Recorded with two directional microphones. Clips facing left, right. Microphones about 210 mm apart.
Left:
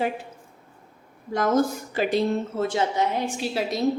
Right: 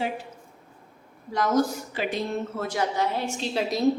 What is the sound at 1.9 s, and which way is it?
Speech, 40° left (ahead or behind).